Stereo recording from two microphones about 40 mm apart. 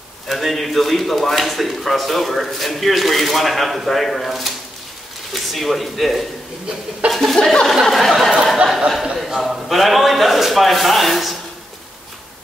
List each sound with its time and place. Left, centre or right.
0.3 s a man's voice: centre
7.3 s speech: centre
7.9 s a man's voice: centre
8.6 s a sound: centre
9.1 s a man's voice: centre